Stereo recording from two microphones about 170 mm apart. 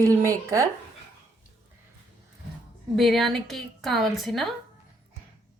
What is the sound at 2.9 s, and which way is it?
A woman's voice, centre (ahead or behind).